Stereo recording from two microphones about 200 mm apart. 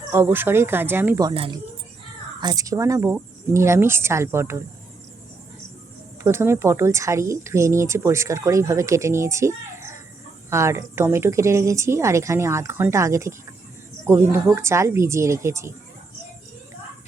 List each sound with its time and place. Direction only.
0.1 s speech: 10° right (ahead or behind)
1.3 s speech: 25° right (ahead or behind)
6.2 s speech: 15° right (ahead or behind)